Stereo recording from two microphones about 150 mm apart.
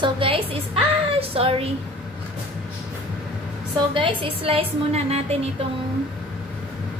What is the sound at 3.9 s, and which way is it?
A woman's voice, 35° right (ahead or behind).